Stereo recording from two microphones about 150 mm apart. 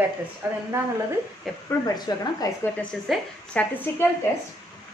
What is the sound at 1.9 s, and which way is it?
Speech, 25° left (ahead or behind).